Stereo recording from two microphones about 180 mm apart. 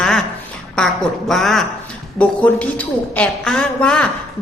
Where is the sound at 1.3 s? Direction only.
Centre (ahead or behind).